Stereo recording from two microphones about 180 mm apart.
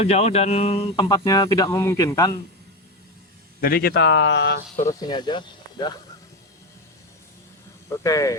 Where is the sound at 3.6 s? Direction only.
55° left (ahead or behind); by 4.6 s 80° left.